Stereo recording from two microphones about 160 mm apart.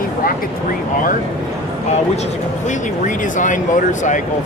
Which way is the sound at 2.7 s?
50° left (ahead or behind).